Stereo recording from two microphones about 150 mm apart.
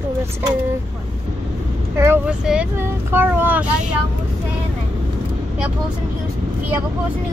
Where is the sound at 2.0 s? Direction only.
15° right (ahead or behind).